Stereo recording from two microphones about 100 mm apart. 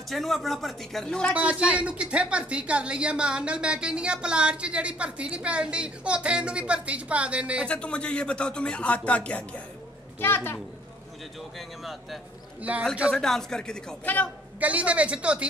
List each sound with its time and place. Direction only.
0.1 s speech: centre (ahead or behind)
1.3 s speech: 10° right (ahead or behind)
7.6 s a child's voice: 10° left (ahead or behind)
11.5 s speech: centre (ahead or behind)
12.7 s speech: 15° right (ahead or behind)
13.1 s speech: 5° left (ahead or behind)
14.0 s speech: 20° left (ahead or behind)
14.6 s speech: 15° right (ahead or behind)